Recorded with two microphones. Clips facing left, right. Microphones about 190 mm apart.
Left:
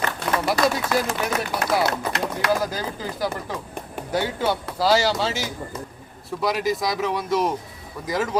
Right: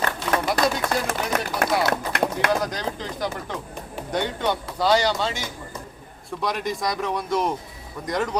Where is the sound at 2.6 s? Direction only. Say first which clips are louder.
Even; 5° left (ahead or behind).